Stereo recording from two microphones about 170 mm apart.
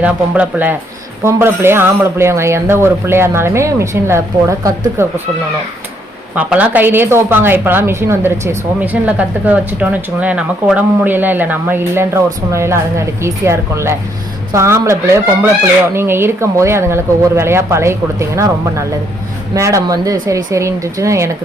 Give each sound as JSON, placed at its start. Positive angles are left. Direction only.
{"t": 0.0, "sound": "speech", "side_deg": -10}
{"t": 6.3, "sound": "speech", "side_deg": -10}